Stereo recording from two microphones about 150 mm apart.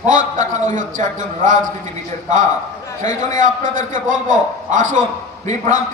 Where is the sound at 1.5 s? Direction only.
60° right (ahead or behind).